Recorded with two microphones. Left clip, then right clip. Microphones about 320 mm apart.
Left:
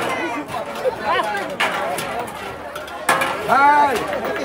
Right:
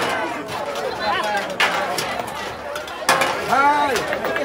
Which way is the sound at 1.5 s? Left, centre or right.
Centre.